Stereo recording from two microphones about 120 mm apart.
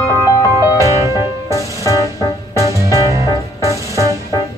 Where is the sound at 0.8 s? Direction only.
25° right (ahead or behind).